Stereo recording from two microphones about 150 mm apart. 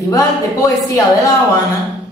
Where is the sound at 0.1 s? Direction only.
20° left (ahead or behind).